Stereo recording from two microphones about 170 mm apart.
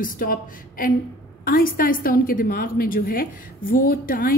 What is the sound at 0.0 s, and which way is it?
A woman's voice, 55° left (ahead or behind).